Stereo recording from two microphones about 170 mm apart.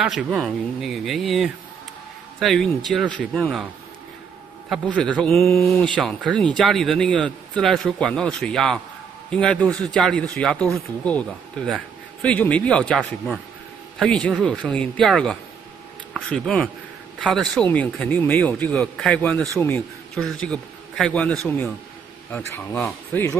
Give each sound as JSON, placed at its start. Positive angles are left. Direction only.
{"t": 0.0, "sound": "a man's voice", "side_deg": 0}
{"t": 4.6, "sound": "a man's voice", "side_deg": 5}